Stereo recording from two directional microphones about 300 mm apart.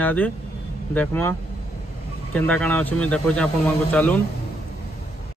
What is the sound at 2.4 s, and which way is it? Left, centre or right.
Speech, centre.